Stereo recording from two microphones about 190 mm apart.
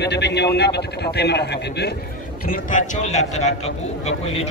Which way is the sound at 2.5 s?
45° left (ahead or behind).